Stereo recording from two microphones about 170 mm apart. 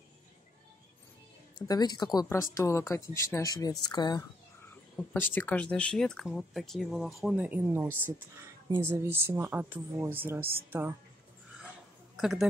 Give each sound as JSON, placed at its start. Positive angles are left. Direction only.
{"t": 1.7, "sound": "speech", "side_deg": 25}
{"t": 5.1, "sound": "speech", "side_deg": 10}
{"t": 12.2, "sound": "speech", "side_deg": 0}